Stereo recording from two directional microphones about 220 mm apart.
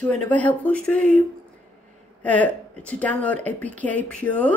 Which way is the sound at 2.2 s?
5° left (ahead or behind).